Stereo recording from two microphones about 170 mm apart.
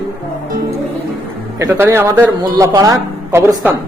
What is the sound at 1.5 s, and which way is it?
Speech, 15° right (ahead or behind).